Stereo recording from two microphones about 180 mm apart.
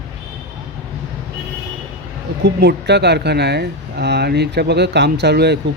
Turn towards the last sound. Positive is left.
turn(degrees=-65)  # may be behind; listen again after turning